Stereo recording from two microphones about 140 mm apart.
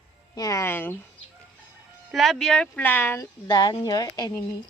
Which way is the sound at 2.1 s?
Centre (ahead or behind).